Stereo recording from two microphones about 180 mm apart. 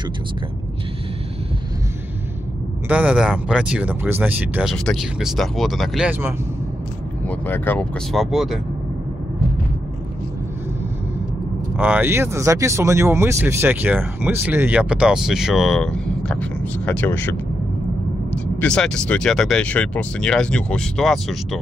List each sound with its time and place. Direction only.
2.9 s speech: 5° right (ahead or behind)
7.2 s speech: 10° left (ahead or behind)
8.1 s speech: centre (ahead or behind)
11.8 s speech: 10° right (ahead or behind)